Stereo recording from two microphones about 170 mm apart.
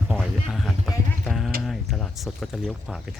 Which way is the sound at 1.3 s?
Centre (ahead or behind).